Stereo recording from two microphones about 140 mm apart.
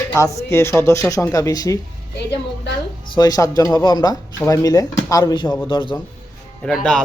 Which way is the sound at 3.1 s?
25° left (ahead or behind).